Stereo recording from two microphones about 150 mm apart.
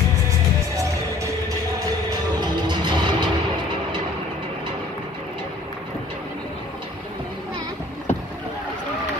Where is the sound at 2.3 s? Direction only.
30° right (ahead or behind).